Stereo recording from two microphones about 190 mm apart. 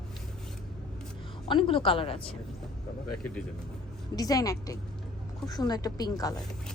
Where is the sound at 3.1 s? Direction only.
5° left (ahead or behind).